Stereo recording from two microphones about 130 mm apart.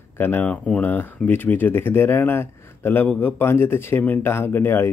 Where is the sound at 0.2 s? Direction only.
15° left (ahead or behind).